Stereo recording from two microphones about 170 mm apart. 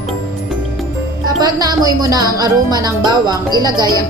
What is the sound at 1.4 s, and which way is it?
Speech, 20° right (ahead or behind).